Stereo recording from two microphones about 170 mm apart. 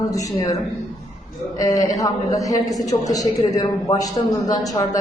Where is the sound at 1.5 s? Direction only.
20° left (ahead or behind).